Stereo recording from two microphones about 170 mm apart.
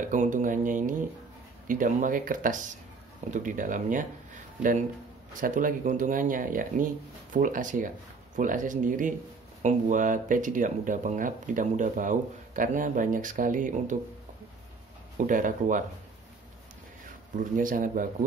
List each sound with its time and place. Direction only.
0.1 s speech: 50° right (ahead or behind)
5.4 s speech: 50° right (ahead or behind)
15.1 s speech: 50° right (ahead or behind)
17.4 s speech: 50° right (ahead or behind)